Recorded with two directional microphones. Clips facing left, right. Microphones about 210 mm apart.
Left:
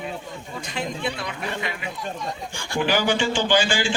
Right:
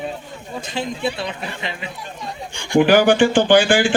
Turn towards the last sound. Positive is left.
turn(degrees=-55)  # may be behind; listen again after turning